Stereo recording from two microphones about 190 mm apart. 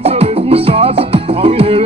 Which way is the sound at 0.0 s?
30° right (ahead or behind).